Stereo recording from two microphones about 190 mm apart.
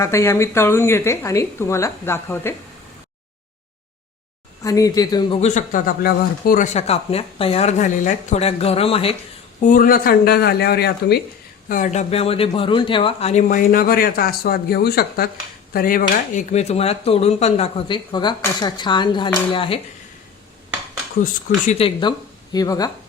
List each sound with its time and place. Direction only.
0.0 s speech: 15° left (ahead or behind)
4.6 s speech: 20° left (ahead or behind)
5.4 s speech: 40° left (ahead or behind)
9.6 s speech: 45° left (ahead or behind)
11.7 s speech: 40° left (ahead or behind)
21.7 s speech: 30° left (ahead or behind)
22.5 s speech: 20° left (ahead or behind)